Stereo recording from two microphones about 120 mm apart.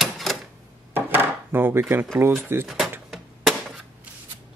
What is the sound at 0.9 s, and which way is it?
Wood, 20° right (ahead or behind).